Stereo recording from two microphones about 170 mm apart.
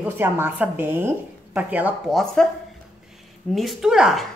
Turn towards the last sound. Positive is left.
turn(degrees=0)  # may be behind; listen again after turning